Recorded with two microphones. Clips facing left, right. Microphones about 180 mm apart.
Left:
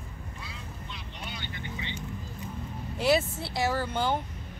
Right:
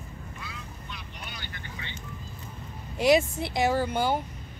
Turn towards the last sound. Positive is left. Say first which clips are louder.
# right 3 dB
turn(degrees=-10)  # may be behind; listen again after turning